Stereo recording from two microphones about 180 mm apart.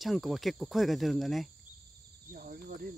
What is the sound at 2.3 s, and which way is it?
Cricket, 50° right (ahead or behind).